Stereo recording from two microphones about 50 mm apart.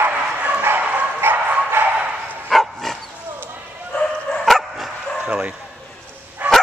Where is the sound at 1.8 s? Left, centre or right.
Right.